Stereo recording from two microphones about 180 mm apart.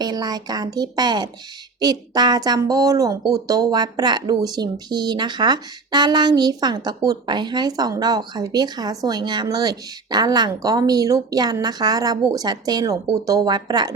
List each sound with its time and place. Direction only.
0.0 s speech: 20° right (ahead or behind)